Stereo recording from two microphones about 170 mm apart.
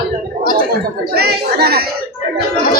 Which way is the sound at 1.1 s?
70° right (ahead or behind).